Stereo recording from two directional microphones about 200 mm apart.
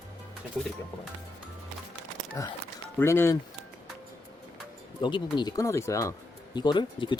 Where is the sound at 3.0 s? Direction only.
10° left (ahead or behind).